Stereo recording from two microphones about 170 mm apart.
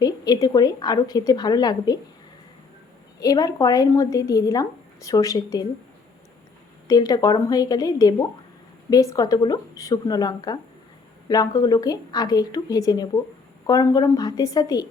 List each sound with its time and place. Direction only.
0.0 s a woman's voice: 25° left (ahead or behind)
3.2 s a woman's voice: 20° left (ahead or behind)
6.8 s a woman's voice: 20° left (ahead or behind)